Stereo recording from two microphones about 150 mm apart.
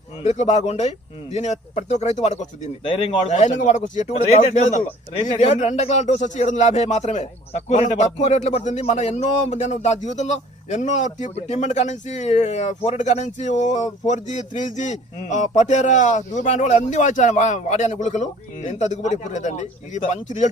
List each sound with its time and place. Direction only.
0.2 s speech: 50° left (ahead or behind)